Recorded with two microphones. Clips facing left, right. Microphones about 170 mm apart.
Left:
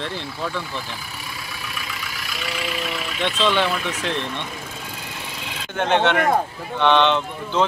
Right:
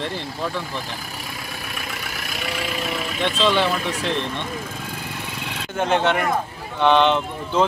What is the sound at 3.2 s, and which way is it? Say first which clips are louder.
Speech: right 1 dB; centre (ahead or behind).